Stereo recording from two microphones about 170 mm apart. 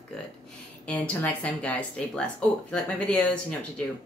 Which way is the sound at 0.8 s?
10° left (ahead or behind).